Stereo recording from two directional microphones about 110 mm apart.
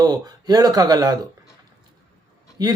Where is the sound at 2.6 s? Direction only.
35° right (ahead or behind).